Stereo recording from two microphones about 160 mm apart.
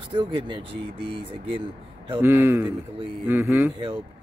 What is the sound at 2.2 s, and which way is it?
A man's voice, 15° right (ahead or behind).